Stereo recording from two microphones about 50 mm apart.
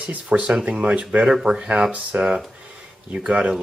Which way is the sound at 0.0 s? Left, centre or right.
Right.